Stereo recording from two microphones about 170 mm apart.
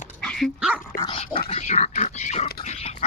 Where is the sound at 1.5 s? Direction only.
45° left (ahead or behind).